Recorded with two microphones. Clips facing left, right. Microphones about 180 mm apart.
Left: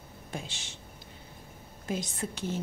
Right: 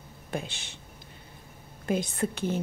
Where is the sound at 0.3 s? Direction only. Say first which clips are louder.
Right 6 dB; 60° right (ahead or behind).